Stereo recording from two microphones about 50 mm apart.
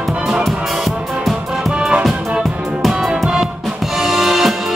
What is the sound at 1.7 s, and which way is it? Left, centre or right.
Music, centre.